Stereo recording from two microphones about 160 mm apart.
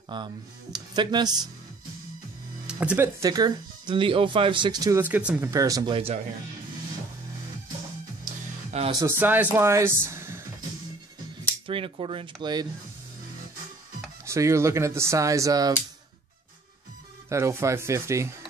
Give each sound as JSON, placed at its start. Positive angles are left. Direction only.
{"t": 0.1, "sound": "speech", "side_deg": -30}
{"t": 2.6, "sound": "music", "side_deg": -5}
{"t": 3.2, "sound": "speech", "side_deg": -25}
{"t": 5.0, "sound": "speech", "side_deg": -10}
{"t": 5.5, "sound": "speech", "side_deg": -20}
{"t": 9.0, "sound": "speech", "side_deg": -10}
{"t": 11.6, "sound": "speech", "side_deg": -35}
{"t": 14.2, "sound": "speech", "side_deg": -20}
{"t": 17.3, "sound": "speech", "side_deg": -15}